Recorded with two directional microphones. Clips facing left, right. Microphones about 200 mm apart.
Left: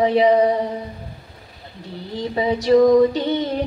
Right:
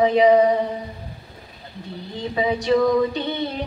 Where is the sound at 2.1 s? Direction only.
35° left (ahead or behind).